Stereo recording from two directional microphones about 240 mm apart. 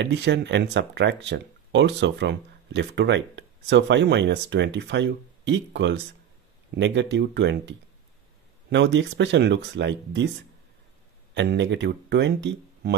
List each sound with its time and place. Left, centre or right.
0.0 s speech: right
11.3 s speech: right